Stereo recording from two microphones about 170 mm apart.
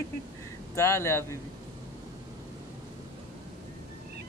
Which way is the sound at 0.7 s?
15° left (ahead or behind).